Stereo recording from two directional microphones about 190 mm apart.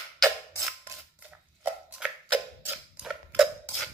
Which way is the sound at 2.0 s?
5° right (ahead or behind).